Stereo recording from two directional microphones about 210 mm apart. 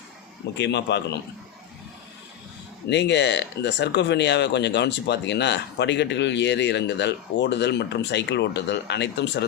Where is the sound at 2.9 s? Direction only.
55° left (ahead or behind).